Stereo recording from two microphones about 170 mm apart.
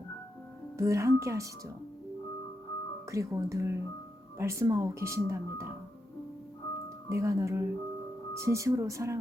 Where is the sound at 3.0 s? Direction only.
20° right (ahead or behind).